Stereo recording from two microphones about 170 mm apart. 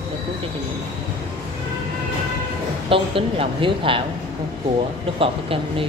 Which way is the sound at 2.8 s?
30° right (ahead or behind).